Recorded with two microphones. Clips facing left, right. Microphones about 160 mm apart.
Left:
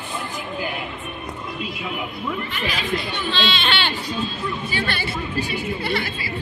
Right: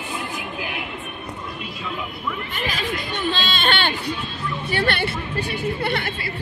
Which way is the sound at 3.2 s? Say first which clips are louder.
Right 1 dB; 45° right (ahead or behind).